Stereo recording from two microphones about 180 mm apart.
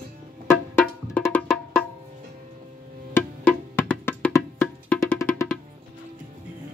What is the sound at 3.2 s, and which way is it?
Music, 10° left (ahead or behind).